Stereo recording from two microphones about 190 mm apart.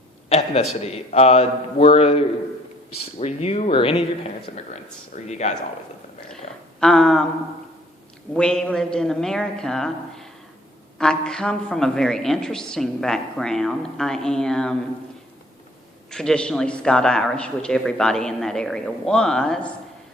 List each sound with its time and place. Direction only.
0.3 s a man's voice: 35° left (ahead or behind)
6.7 s speech: 5° left (ahead or behind)
8.3 s speech: 5° left (ahead or behind)
16.0 s speech: 5° left (ahead or behind)